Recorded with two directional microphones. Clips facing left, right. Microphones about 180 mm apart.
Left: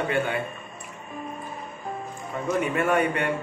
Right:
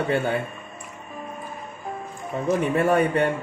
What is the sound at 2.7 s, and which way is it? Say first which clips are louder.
Speech: right 4 dB; 30° right (ahead or behind).